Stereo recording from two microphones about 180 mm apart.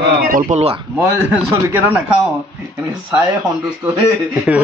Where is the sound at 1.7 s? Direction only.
15° right (ahead or behind).